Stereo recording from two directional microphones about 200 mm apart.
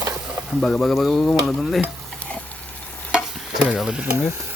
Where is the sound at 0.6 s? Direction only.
Centre (ahead or behind).